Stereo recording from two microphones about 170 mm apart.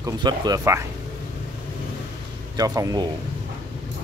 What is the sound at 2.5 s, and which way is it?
Speech, 20° right (ahead or behind).